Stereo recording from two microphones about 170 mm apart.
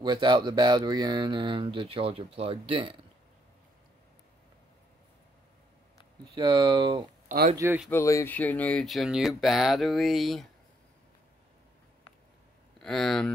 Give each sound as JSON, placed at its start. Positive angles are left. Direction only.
{"t": 0.0, "sound": "speech", "side_deg": -25}
{"t": 6.3, "sound": "speech", "side_deg": -30}
{"t": 7.5, "sound": "speech", "side_deg": -15}
{"t": 7.9, "sound": "speech", "side_deg": 15}
{"t": 12.7, "sound": "speech", "side_deg": 0}